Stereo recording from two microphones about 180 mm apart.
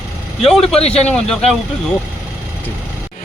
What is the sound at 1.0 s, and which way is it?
Speech, 5° left (ahead or behind).